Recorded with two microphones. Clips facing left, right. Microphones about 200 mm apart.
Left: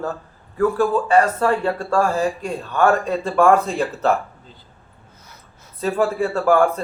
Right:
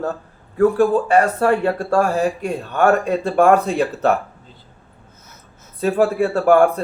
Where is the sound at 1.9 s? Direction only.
60° right (ahead or behind).